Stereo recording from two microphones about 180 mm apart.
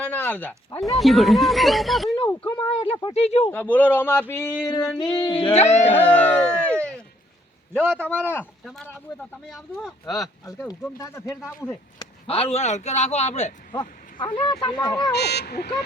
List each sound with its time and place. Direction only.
0.0 s speech: 10° left (ahead or behind)
0.9 s speech: centre (ahead or behind)
2.6 s speech: 30° left (ahead or behind)
3.5 s speech: 10° left (ahead or behind)
5.5 s speech: 40° left (ahead or behind)
5.9 s speech: 10° left (ahead or behind)
10.2 s speech: 20° left (ahead or behind)
11.9 s speech: 35° left (ahead or behind)
14.3 s speech: 30° left (ahead or behind)
15.1 s speech: 65° left (ahead or behind)